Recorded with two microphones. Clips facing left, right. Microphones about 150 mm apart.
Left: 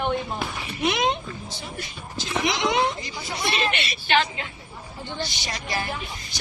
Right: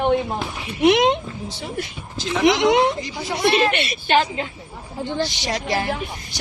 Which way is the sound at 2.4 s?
65° right (ahead or behind).